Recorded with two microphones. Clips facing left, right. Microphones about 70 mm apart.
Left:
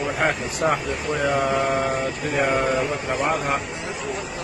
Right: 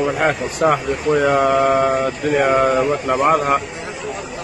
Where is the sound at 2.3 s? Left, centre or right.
Right.